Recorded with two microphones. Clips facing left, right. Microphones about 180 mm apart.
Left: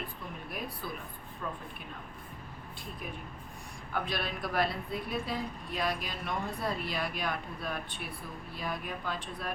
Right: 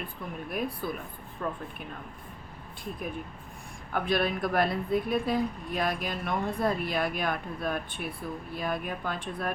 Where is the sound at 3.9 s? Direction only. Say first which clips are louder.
Right 7 dB; 55° right (ahead or behind).